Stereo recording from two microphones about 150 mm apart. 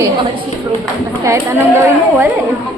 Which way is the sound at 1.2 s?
20° right (ahead or behind).